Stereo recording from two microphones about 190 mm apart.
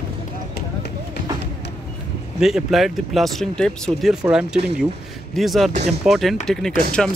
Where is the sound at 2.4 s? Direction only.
Centre (ahead or behind).